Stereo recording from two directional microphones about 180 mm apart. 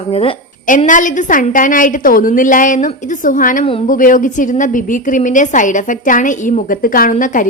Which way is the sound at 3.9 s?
50° left (ahead or behind).